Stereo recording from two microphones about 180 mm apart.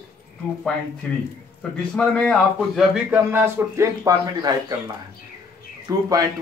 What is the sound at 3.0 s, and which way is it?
A man's voice, 10° right (ahead or behind).